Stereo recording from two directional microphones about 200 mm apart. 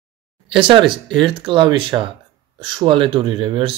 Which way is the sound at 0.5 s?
25° right (ahead or behind).